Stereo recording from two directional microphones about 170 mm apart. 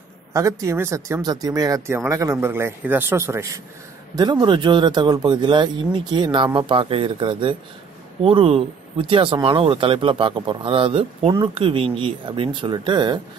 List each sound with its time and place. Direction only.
0.3 s speech: 20° right (ahead or behind)